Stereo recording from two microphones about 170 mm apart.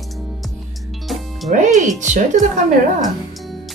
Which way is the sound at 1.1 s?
Centre (ahead or behind).